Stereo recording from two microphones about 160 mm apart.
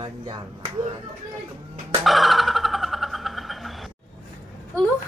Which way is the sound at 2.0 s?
Centre (ahead or behind).